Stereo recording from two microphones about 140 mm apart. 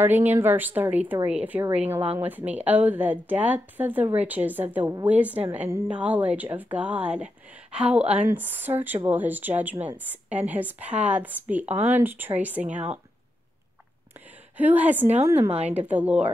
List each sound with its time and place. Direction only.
0.0 s a woman's voice: 15° right (ahead or behind)
8.0 s a woman's voice: 50° right (ahead or behind)
8.3 s speech: 15° right (ahead or behind)
14.6 s speech: 10° right (ahead or behind)